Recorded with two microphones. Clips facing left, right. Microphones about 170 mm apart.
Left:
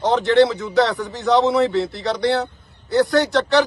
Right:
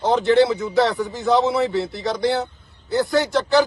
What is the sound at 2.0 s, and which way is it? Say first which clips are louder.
Speech: even; 15° right (ahead or behind).